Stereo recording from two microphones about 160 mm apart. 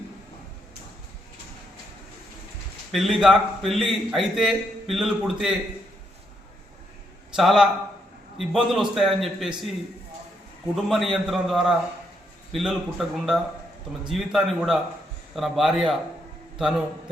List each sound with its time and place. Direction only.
2.9 s a man's voice: centre (ahead or behind)
7.3 s a man's voice: centre (ahead or behind)
10.8 s a man's voice: centre (ahead or behind)